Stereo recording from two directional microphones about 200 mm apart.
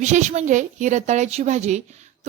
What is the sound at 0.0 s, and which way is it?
A woman's voice, 35° right (ahead or behind).